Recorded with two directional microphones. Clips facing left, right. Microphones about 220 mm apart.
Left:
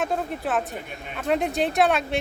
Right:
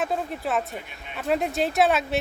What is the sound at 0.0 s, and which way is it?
Speech, centre (ahead or behind).